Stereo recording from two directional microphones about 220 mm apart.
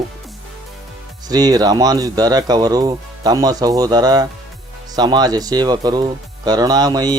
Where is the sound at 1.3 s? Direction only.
15° right (ahead or behind).